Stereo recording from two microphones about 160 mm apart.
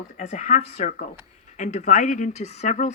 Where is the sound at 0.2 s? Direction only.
50° left (ahead or behind).